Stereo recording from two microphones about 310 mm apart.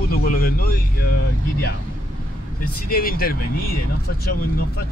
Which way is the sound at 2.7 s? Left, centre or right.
Left.